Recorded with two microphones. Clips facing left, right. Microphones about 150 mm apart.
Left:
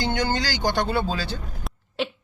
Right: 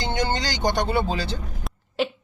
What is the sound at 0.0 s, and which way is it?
Speech, 25° right (ahead or behind).